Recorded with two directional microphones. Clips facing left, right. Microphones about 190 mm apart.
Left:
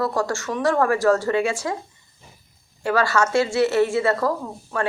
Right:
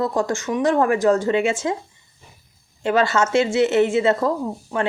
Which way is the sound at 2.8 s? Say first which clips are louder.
Right 2 dB; 20° right (ahead or behind).